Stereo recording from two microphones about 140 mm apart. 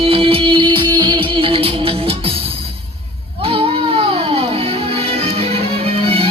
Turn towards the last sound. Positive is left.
turn(degrees=-45)  # may be behind; listen again after turning